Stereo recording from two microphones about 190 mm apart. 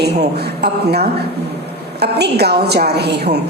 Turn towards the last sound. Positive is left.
turn(degrees=-60)  # may be behind; listen again after turning